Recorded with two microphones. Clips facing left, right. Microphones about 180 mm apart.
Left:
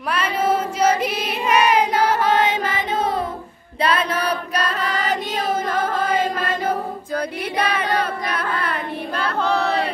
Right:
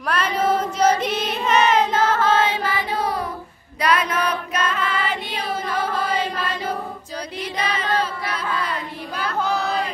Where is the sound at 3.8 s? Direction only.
30° left (ahead or behind); by 8.2 s 60° left (ahead or behind).